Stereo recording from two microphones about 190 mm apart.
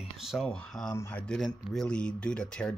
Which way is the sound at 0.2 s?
Centre (ahead or behind).